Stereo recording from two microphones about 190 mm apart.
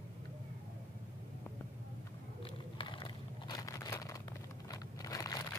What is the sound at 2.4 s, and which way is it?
Crumpling, 25° left (ahead or behind).